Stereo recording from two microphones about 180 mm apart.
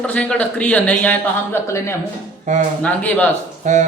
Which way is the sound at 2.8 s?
5° left (ahead or behind).